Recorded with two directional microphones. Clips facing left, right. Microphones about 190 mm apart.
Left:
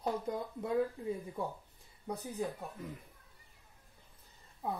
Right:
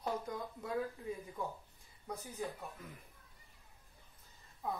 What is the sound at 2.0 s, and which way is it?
Speech, 30° left (ahead or behind).